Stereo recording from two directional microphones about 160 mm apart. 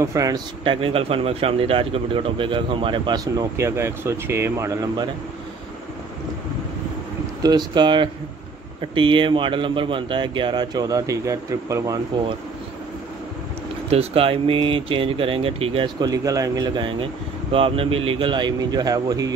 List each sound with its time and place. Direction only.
0.0 s a man's voice: 20° right (ahead or behind)
0.7 s speech: 35° right (ahead or behind); by 5.0 s 20° right (ahead or behind)
7.4 s a man's voice: 25° right (ahead or behind)
13.8 s speech: 40° right (ahead or behind)